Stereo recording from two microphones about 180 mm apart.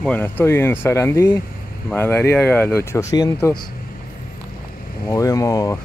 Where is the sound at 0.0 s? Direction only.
10° left (ahead or behind).